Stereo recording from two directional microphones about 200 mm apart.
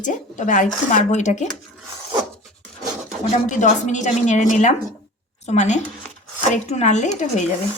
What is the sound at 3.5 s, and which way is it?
Speech, 35° left (ahead or behind).